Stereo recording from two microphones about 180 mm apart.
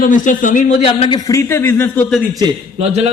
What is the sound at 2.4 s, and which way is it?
Speech, 30° right (ahead or behind).